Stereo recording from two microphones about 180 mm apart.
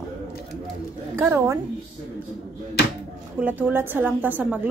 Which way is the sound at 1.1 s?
15° right (ahead or behind).